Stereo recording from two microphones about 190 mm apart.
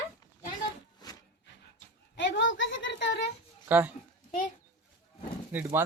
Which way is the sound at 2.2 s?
70° left (ahead or behind).